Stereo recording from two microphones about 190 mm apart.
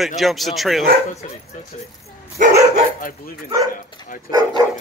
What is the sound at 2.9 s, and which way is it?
Speech, 45° left (ahead or behind).